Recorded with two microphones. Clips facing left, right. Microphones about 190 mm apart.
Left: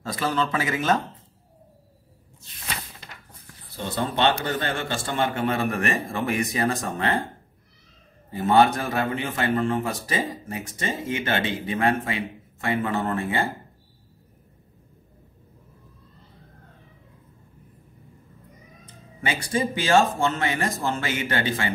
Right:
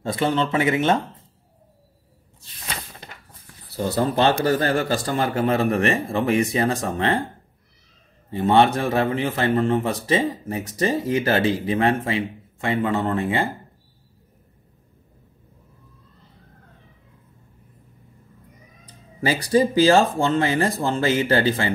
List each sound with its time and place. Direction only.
0.0 s speech: 25° right (ahead or behind)
3.7 s speech: 35° right (ahead or behind)
8.3 s speech: 30° right (ahead or behind)
19.5 s speech: 35° right (ahead or behind)